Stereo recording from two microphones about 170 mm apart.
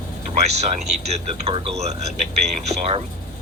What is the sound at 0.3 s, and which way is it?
Speech, 40° right (ahead or behind).